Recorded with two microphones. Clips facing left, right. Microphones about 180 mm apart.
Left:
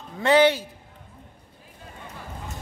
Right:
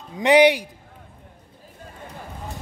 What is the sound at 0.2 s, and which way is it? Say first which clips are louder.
Speech: right 3 dB; 15° right (ahead or behind).